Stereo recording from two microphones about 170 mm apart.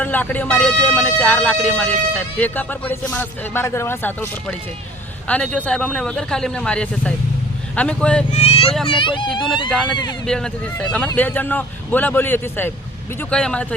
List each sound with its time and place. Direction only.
0.0 s speech: 10° left (ahead or behind)
8.3 s a child's voice: 40° left (ahead or behind)
9.6 s speech: 5° left (ahead or behind)